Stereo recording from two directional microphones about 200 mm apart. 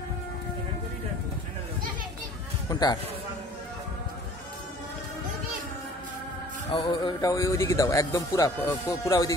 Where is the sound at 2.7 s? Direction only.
20° left (ahead or behind).